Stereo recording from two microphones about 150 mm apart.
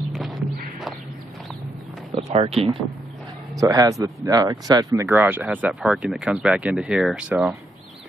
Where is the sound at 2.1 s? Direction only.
45° right (ahead or behind).